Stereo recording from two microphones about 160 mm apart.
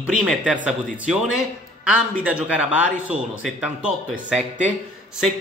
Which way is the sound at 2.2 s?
5° right (ahead or behind).